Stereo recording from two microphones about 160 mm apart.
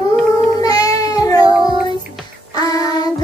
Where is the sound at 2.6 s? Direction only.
20° left (ahead or behind).